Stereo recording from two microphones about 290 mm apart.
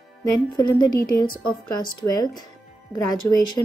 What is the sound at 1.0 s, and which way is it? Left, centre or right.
Speech, left.